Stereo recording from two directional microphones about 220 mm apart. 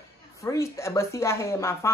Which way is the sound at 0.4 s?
15° left (ahead or behind).